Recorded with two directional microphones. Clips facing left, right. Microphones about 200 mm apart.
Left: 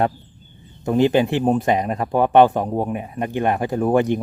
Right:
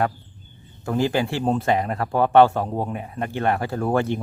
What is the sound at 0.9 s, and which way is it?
Speech, 20° left (ahead or behind).